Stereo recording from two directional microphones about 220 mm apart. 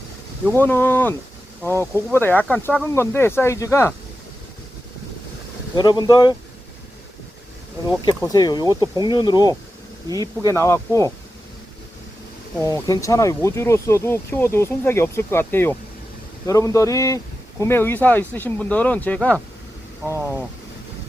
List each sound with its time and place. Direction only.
0.5 s speech: 10° left (ahead or behind)
5.7 s speech: 20° left (ahead or behind)
7.9 s speech: 15° left (ahead or behind)
12.5 s speech: 15° left (ahead or behind)